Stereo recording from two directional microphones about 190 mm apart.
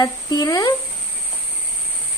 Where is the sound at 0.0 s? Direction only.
20° left (ahead or behind).